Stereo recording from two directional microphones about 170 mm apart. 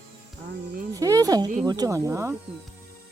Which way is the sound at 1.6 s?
25° right (ahead or behind).